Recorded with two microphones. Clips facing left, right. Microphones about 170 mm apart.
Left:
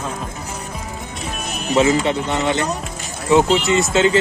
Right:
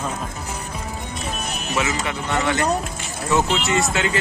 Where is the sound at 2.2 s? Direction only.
20° left (ahead or behind).